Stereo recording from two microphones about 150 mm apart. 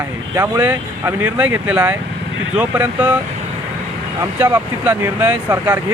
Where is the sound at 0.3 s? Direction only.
15° right (ahead or behind).